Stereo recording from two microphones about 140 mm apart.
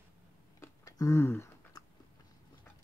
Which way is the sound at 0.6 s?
20° left (ahead or behind).